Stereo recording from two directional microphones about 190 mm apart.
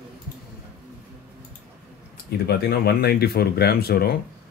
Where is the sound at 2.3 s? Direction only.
55° left (ahead or behind).